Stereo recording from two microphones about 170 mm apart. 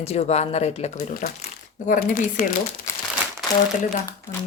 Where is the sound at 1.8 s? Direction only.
50° left (ahead or behind).